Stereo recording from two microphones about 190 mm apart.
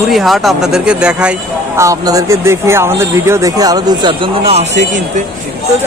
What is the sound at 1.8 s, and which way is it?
Speech, 15° right (ahead or behind).